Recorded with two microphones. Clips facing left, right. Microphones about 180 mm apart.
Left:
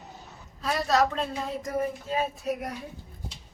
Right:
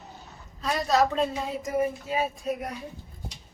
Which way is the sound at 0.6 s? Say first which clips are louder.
Right 1 dB; centre (ahead or behind).